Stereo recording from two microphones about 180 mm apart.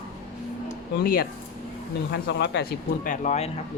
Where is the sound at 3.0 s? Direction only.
40° left (ahead or behind).